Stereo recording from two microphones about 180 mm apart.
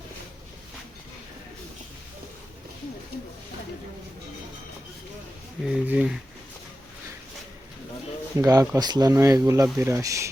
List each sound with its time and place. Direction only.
5.6 s speech: 5° right (ahead or behind)
8.4 s speech: 20° right (ahead or behind)